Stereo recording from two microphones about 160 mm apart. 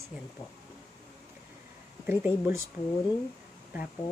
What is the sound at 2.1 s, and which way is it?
Speech, 15° right (ahead or behind).